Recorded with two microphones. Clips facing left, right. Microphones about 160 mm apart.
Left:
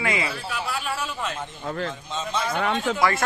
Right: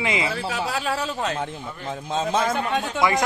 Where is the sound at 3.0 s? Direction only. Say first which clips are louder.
Right 4 dB; 15° right (ahead or behind).